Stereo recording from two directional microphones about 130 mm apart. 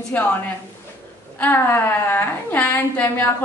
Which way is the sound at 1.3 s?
15° left (ahead or behind).